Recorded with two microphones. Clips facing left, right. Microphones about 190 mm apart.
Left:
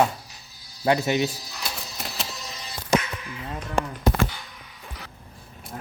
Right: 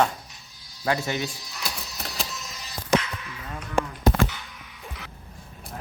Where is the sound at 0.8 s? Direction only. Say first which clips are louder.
Left 5 dB; 20° left (ahead or behind).